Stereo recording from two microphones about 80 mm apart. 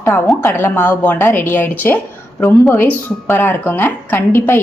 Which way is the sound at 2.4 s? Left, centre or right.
Left.